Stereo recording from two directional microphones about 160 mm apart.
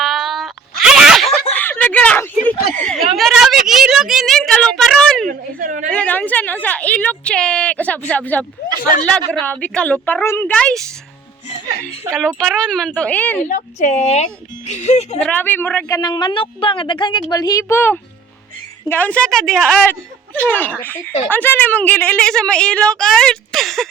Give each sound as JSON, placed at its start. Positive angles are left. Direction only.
{"t": 0.0, "sound": "sneeze", "side_deg": 0}
{"t": 1.5, "sound": "a sound", "side_deg": 10}
{"t": 5.3, "sound": "a sound", "side_deg": -55}
{"t": 5.9, "sound": "speech", "side_deg": 10}
{"t": 12.5, "sound": "speech", "side_deg": 5}
{"t": 13.4, "sound": "a woman's voice", "side_deg": 50}
{"t": 15.2, "sound": "speech", "side_deg": 10}
{"t": 16.0, "sound": "a woman's voice", "side_deg": 25}